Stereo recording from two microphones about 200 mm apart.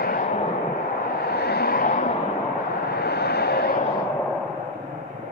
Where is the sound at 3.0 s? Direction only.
55° left (ahead or behind).